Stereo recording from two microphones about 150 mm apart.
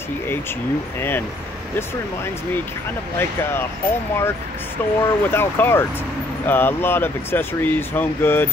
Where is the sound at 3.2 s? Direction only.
15° left (ahead or behind).